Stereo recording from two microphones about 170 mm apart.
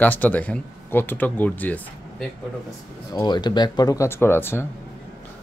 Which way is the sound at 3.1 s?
25° left (ahead or behind).